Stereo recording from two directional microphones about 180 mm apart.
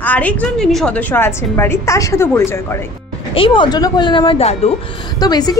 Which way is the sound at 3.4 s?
30° left (ahead or behind).